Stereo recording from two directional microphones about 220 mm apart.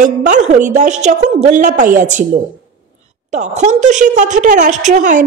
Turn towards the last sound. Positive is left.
turn(degrees=-35)  # may be behind; listen again after turning